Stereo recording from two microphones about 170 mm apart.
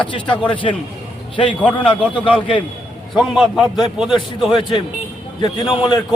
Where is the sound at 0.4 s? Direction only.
30° left (ahead or behind).